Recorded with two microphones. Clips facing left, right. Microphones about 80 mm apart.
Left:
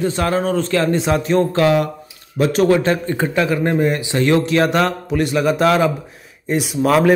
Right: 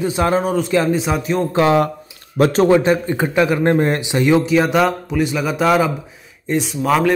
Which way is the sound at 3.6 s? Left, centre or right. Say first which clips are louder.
Right 2 dB; right.